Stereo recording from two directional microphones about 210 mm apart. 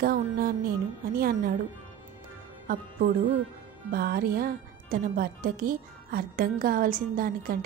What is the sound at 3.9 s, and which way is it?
Speech, 45° right (ahead or behind).